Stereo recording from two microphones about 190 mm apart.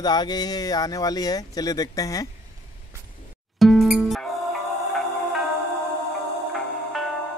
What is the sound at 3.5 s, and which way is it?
Music, centre (ahead or behind).